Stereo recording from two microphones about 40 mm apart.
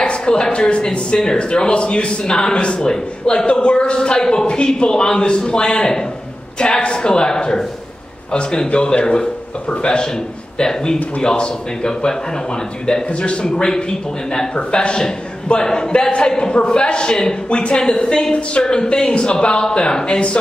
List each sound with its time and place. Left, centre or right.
0.0 s speech: left